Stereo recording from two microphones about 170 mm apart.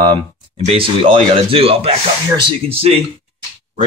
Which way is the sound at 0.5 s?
35° right (ahead or behind).